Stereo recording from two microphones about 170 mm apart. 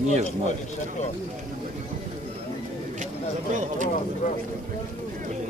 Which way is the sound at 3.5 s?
45° right (ahead or behind).